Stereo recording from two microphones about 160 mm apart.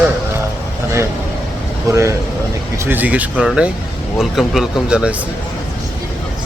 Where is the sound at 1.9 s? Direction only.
20° right (ahead or behind).